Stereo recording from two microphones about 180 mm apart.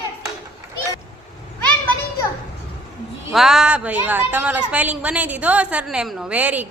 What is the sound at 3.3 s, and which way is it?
A woman's voice, centre (ahead or behind).